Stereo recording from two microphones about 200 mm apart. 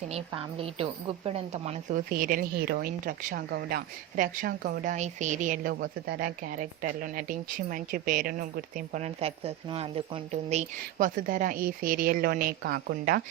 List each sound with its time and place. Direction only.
0.3 s speech: 25° right (ahead or behind); by 13.2 s 50° right (ahead or behind)